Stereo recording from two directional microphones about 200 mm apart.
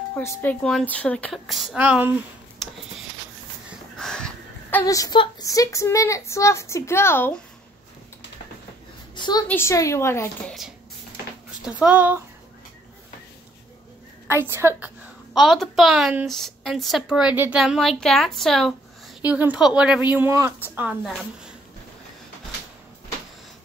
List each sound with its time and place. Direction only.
0.1 s a woman's voice: 10° left (ahead or behind); by 2.2 s 10° right (ahead or behind)
4.0 s a woman's voice: 5° left (ahead or behind)
9.1 s a sound: 20° left (ahead or behind)
9.5 s a woman's voice: 15° left (ahead or behind)
11.6 s a woman's voice: 5° right (ahead or behind)
14.2 s a woman's voice: 10° right (ahead or behind)
15.3 s a woman's voice: centre (ahead or behind)